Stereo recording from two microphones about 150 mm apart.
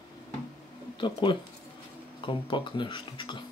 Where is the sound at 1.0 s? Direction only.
30° left (ahead or behind).